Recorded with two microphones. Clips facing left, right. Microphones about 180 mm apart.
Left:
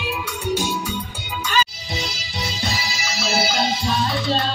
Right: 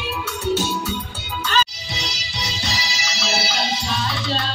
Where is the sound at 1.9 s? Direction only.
50° left (ahead or behind).